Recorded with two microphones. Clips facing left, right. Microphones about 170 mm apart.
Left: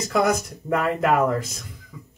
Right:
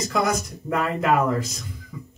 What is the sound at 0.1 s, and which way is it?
Speech, 55° left (ahead or behind).